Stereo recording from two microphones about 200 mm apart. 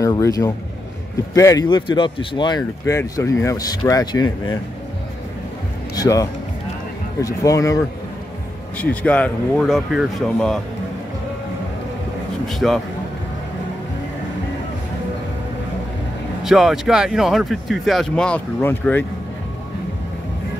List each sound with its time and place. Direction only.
0.0 s speech: 15° left (ahead or behind)
5.9 s speech: 15° left (ahead or behind)
12.4 s speech: centre (ahead or behind)
16.4 s speech: centre (ahead or behind)